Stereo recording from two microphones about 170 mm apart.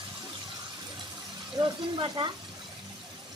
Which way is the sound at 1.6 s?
30° right (ahead or behind).